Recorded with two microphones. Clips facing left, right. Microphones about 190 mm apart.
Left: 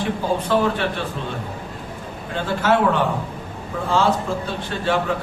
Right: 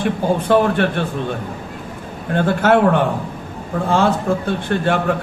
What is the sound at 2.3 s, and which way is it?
A man's voice, 55° right (ahead or behind).